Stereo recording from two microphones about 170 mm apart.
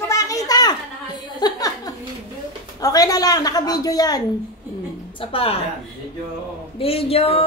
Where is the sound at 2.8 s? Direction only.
20° left (ahead or behind).